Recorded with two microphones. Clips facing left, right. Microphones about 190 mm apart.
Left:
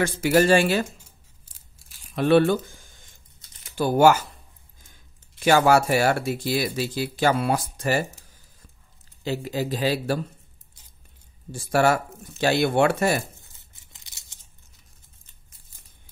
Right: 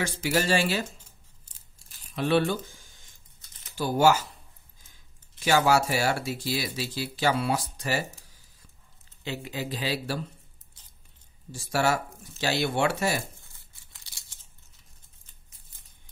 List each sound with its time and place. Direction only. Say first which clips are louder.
0.0 s speech: left 8 dB; 55° left (ahead or behind)
2.1 s speech: left 6 dB; 55° left (ahead or behind)
3.7 s speech: left 5 dB; 55° left (ahead or behind)
5.4 s speech: left 5 dB; 55° left (ahead or behind)
9.2 s speech: left 7 dB; 40° left (ahead or behind)
11.5 s speech: left 5 dB; 55° left (ahead or behind)
13.4 s tearing: left 2 dB; 20° left (ahead or behind)